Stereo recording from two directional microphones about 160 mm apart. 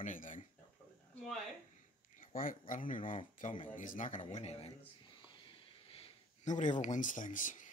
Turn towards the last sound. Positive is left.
turn(degrees=55)  # may be behind; listen again after turning